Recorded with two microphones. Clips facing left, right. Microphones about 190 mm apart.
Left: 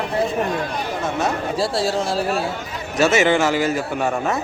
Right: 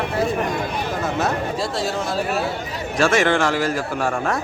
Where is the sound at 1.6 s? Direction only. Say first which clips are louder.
Left 3 dB; 35° left (ahead or behind).